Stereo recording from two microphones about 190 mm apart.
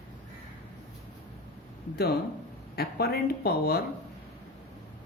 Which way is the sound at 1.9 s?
55° left (ahead or behind).